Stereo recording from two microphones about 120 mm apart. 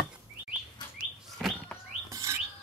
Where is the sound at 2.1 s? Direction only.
25° right (ahead or behind).